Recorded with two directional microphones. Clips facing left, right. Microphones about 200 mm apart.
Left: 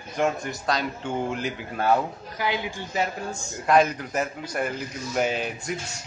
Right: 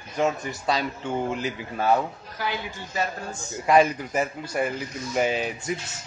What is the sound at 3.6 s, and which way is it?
A man's voice, 5° right (ahead or behind).